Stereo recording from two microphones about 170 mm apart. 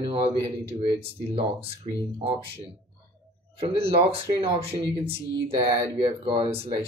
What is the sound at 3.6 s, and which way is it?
Speech, 35° right (ahead or behind).